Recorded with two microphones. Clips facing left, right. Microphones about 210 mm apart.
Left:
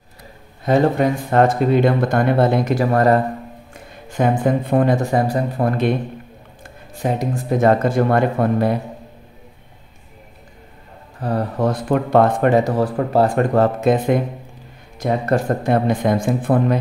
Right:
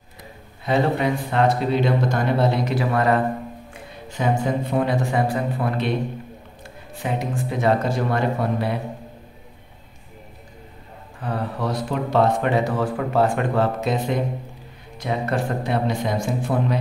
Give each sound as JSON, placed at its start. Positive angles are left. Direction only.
{"t": 0.7, "sound": "speech", "side_deg": 45}
{"t": 4.1, "sound": "speech", "side_deg": 55}
{"t": 7.0, "sound": "speech", "side_deg": 40}
{"t": 11.1, "sound": "speech", "side_deg": 40}